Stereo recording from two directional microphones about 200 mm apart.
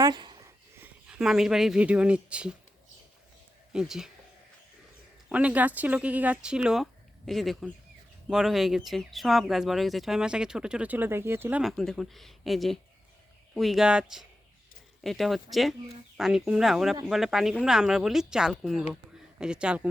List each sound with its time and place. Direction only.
0.0 s a sound: 20° right (ahead or behind)
0.8 s speech: 5° right (ahead or behind)
3.7 s speech: 5° right (ahead or behind)
5.3 s speech: 5° right (ahead or behind)
11.6 s speech: centre (ahead or behind)